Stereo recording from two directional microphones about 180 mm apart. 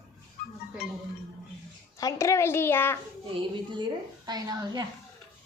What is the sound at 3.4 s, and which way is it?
A child's voice, 25° right (ahead or behind).